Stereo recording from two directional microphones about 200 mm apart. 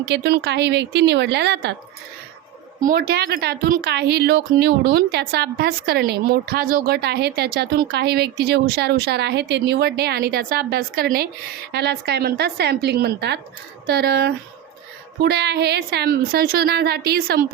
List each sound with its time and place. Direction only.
0.0 s a woman's voice: 55° right (ahead or behind)
2.8 s a woman's voice: 50° right (ahead or behind)